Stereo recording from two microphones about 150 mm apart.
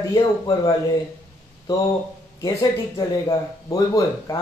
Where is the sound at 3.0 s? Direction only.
25° left (ahead or behind).